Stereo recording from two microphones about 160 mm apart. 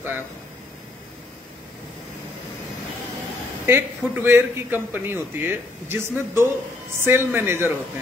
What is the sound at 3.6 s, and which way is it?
A man's voice, 15° right (ahead or behind).